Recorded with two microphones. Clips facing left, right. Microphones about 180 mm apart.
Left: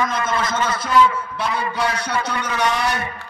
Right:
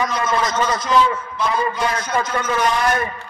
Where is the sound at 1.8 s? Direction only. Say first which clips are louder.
Right 1 dB; 70° left (ahead or behind).